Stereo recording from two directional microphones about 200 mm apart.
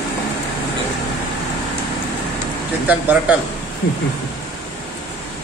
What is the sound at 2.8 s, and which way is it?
Speech, 10° right (ahead or behind).